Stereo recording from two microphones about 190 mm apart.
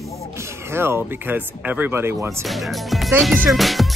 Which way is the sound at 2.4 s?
Centre (ahead or behind).